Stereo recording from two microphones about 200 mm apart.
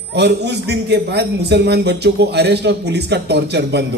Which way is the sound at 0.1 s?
55° right (ahead or behind).